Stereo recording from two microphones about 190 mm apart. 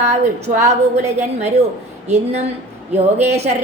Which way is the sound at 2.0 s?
35° right (ahead or behind).